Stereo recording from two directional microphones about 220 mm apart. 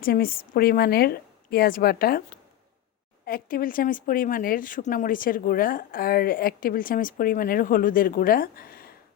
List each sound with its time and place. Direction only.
0.0 s a woman's voice: 40° left (ahead or behind)
3.2 s speech: 40° left (ahead or behind)